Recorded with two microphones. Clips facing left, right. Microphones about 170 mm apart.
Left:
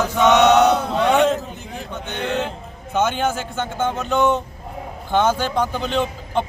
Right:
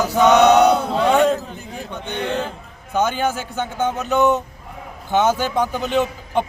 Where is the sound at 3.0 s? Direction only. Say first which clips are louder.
Even; centre (ahead or behind).